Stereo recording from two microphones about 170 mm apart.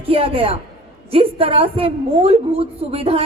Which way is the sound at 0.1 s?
35° right (ahead or behind).